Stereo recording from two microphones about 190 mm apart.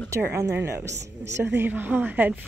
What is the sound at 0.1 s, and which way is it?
Speech, 15° right (ahead or behind).